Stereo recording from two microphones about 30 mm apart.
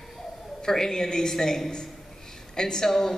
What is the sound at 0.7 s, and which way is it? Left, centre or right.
A man's voice, centre.